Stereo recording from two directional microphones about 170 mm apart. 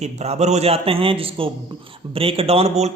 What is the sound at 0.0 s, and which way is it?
Speech, 40° right (ahead or behind).